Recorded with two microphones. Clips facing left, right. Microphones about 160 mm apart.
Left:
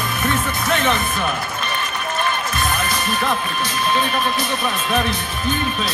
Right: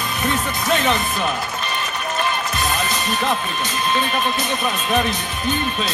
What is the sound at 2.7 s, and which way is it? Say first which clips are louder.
Music: even; 20° right (ahead or behind).